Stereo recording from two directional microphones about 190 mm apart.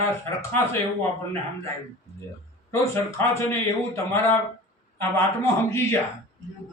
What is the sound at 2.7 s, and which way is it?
Speech, 15° left (ahead or behind).